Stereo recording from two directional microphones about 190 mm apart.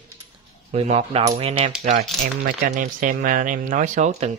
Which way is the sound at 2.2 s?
45° right (ahead or behind).